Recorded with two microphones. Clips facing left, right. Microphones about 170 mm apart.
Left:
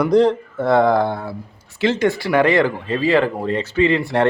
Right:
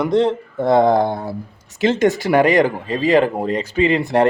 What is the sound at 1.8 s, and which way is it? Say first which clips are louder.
Speech: right 2 dB; 45° right (ahead or behind).